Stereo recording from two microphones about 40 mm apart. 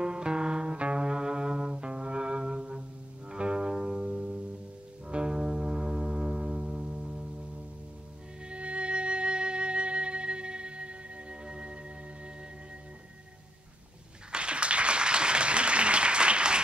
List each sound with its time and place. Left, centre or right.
0.0 s music: right
8.5 s music: right
14.3 s applause: right